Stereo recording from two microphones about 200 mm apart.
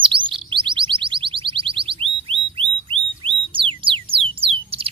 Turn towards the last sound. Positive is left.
turn(degrees=-25)  # may be behind; listen again after turning